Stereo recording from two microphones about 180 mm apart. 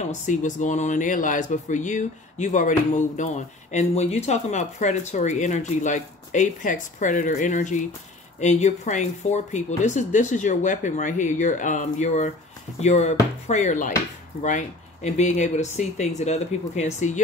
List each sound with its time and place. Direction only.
0.1 s speech: 45° left (ahead or behind)